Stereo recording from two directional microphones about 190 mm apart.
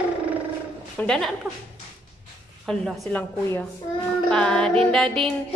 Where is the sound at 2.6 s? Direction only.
Centre (ahead or behind).